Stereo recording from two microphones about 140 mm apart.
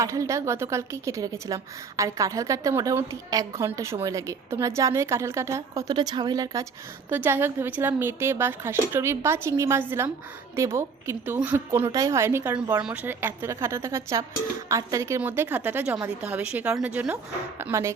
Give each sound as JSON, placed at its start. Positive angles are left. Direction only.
{"t": 0.0, "sound": "a woman's voice", "side_deg": -20}
{"t": 7.1, "sound": "a woman's voice", "side_deg": -15}